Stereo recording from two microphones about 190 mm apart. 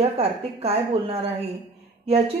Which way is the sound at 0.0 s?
30° right (ahead or behind).